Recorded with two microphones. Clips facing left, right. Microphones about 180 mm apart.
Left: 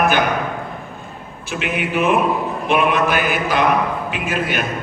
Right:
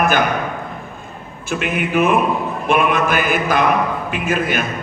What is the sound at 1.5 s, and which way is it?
A man's voice, 50° right (ahead or behind).